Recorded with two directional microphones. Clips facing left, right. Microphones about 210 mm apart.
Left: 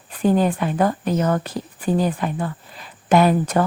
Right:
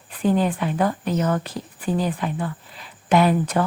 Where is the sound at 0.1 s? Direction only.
45° left (ahead or behind).